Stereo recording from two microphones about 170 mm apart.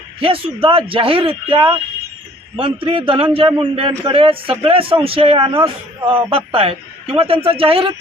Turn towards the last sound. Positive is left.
turn(degrees=-35)  # may be behind; listen again after turning